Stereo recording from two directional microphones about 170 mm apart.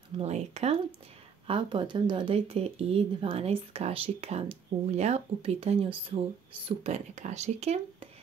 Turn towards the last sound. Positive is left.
turn(degrees=-40)  # may be behind; listen again after turning